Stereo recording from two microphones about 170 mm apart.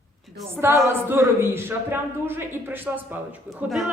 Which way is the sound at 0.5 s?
15° right (ahead or behind).